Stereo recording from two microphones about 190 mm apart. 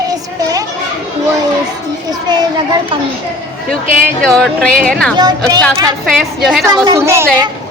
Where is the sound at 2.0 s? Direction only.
20° right (ahead or behind).